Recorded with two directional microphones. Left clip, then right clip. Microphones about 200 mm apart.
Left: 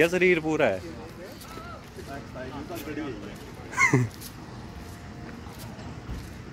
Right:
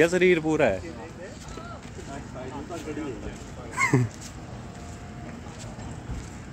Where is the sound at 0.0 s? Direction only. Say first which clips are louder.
Right 1 dB; 10° right (ahead or behind).